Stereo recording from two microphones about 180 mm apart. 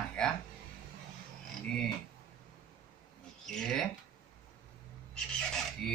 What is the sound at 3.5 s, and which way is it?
Cattle, 5° left (ahead or behind).